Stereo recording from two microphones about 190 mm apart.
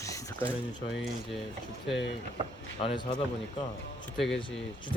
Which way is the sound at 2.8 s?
25° left (ahead or behind).